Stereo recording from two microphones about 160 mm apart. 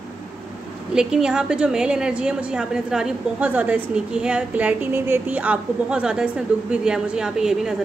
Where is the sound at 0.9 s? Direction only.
5° right (ahead or behind).